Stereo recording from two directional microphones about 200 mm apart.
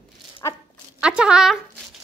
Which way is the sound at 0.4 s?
15° left (ahead or behind).